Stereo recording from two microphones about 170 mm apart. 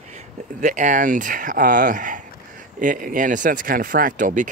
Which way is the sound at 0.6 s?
45° right (ahead or behind).